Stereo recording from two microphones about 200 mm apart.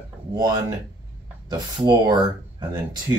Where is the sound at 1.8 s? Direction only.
20° right (ahead or behind).